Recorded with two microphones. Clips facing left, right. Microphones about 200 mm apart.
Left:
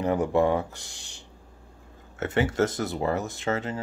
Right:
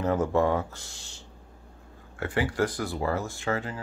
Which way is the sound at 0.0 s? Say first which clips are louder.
Left 1 dB; 15° left (ahead or behind).